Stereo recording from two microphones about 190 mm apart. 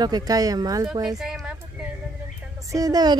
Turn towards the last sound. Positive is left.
turn(degrees=-20)  # may be behind; listen again after turning